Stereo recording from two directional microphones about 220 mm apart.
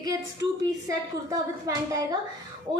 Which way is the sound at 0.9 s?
15° right (ahead or behind).